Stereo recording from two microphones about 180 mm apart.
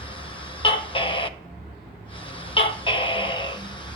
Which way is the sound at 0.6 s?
30° left (ahead or behind).